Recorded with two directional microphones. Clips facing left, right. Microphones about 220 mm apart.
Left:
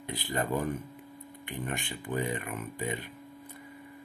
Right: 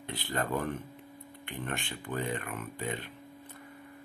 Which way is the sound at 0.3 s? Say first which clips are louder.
Left 2 dB; 15° left (ahead or behind).